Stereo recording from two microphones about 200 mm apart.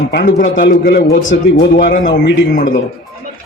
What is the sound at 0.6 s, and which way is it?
Speech, 50° left (ahead or behind).